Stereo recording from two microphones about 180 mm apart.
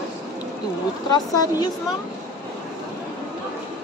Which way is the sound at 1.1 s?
20° left (ahead or behind).